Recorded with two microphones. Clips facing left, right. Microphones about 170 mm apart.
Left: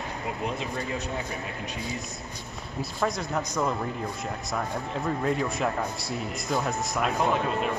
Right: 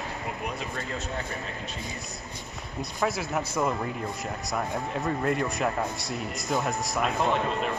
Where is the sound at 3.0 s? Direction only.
5° right (ahead or behind).